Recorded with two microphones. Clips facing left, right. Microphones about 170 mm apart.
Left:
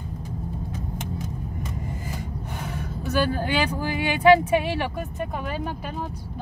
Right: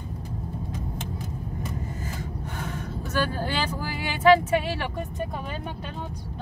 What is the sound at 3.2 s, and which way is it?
Speech, 15° left (ahead or behind).